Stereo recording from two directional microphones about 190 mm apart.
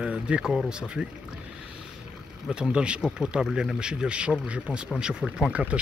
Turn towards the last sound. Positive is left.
turn(degrees=-5)  # may be behind; listen again after turning